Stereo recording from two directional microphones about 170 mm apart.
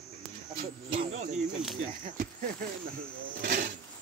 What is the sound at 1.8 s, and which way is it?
Speech, 50° right (ahead or behind).